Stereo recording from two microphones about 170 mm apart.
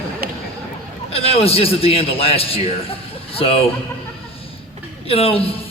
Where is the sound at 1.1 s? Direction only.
35° left (ahead or behind).